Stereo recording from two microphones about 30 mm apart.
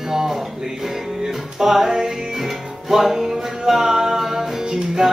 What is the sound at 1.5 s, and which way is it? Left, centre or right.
Music, centre.